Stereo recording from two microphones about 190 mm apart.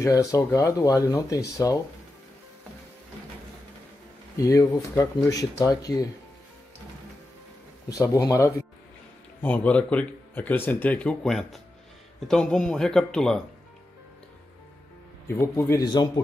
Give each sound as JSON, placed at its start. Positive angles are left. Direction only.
{"t": 0.0, "sound": "speech", "side_deg": 15}
{"t": 4.4, "sound": "speech", "side_deg": 15}
{"t": 7.9, "sound": "speech", "side_deg": 20}
{"t": 15.2, "sound": "speech", "side_deg": 10}